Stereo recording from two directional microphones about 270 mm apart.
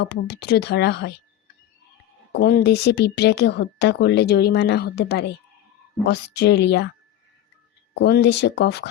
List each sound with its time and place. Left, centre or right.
0.0 s speech: left
2.3 s speech: left
7.9 s speech: left